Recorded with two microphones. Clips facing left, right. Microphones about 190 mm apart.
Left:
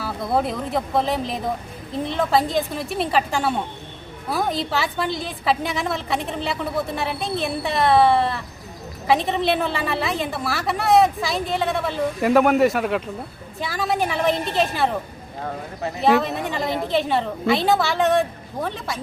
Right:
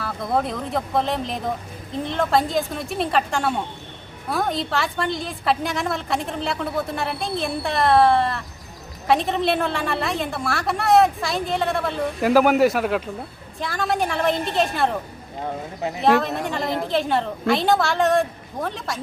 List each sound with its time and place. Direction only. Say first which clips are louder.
0.0 s a woman's voice: left 1 dB; 5° left (ahead or behind)
16.0 s a woman's voice: even; centre (ahead or behind)